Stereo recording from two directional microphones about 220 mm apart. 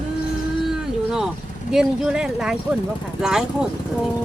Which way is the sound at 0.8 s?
Centre (ahead or behind).